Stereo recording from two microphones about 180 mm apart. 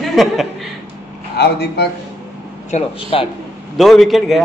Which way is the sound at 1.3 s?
65° left (ahead or behind).